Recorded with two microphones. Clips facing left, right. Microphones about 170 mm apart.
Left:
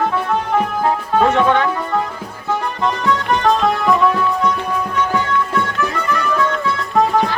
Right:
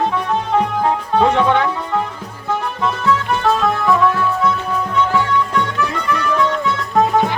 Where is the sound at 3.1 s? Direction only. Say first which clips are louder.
Even; 15° left (ahead or behind).